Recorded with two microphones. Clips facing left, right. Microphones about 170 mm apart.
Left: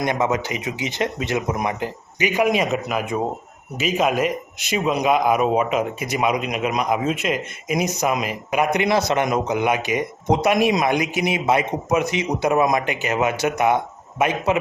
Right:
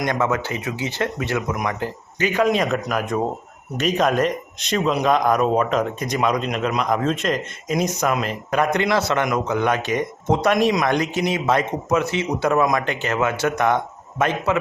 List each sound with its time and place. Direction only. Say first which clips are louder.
0.0 s speech: even; 20° left (ahead or behind)
2.1 s speech: even; 15° left (ahead or behind)